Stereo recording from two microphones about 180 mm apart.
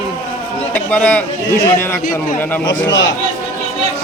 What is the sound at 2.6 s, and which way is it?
Speech, 90° left.